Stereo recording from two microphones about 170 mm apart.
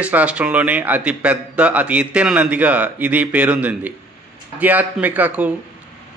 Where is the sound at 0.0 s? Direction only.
10° right (ahead or behind).